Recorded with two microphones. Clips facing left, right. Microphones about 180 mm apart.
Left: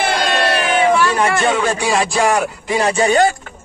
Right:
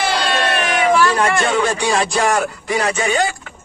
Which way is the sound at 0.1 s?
45° left (ahead or behind).